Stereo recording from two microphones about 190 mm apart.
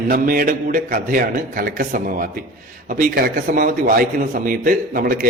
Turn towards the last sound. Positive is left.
turn(degrees=-50)  # may be behind; listen again after turning